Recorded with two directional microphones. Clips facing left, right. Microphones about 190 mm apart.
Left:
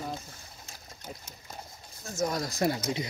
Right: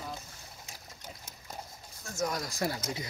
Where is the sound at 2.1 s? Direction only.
25° left (ahead or behind).